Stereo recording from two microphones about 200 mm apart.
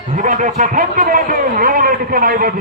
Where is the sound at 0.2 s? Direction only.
40° right (ahead or behind).